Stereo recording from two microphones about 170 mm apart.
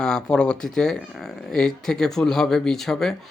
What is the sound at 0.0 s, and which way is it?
Speech, 5° left (ahead or behind).